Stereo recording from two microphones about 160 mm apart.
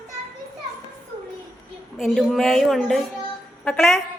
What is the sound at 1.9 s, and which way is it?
A woman's voice, centre (ahead or behind).